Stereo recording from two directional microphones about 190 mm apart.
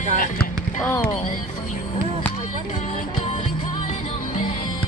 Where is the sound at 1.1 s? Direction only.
40° left (ahead or behind).